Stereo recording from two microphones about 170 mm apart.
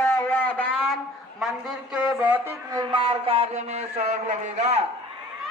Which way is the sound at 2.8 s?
30° right (ahead or behind).